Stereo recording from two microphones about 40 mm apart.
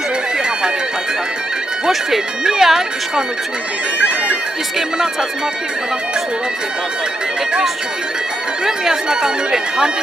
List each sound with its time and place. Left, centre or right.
1.9 s speech: centre
8.6 s speech: centre